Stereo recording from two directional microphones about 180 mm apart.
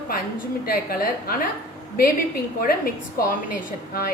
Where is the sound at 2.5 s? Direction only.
55° left (ahead or behind).